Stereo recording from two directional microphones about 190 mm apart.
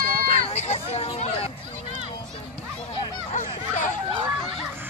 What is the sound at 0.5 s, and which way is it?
Hubbub, 35° left (ahead or behind).